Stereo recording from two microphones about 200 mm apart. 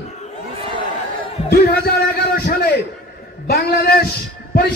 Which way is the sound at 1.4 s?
50° left (ahead or behind).